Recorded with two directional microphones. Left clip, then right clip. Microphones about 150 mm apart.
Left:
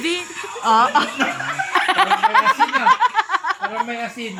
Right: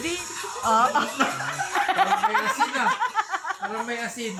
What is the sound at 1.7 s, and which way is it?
Snicker, 25° left (ahead or behind).